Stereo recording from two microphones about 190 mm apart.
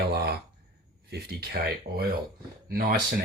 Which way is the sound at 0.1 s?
55° right (ahead or behind).